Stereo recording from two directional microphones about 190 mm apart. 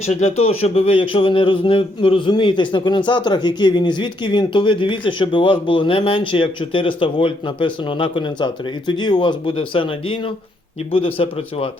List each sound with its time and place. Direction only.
0.0 s speech: 35° left (ahead or behind)